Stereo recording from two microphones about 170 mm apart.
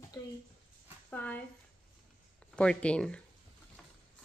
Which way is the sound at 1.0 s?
10° left (ahead or behind).